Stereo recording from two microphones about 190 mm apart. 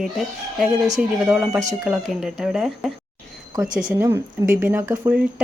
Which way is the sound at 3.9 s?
10° right (ahead or behind).